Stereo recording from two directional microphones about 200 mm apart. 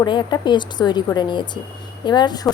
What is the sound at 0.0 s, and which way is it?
A woman's voice, 20° left (ahead or behind).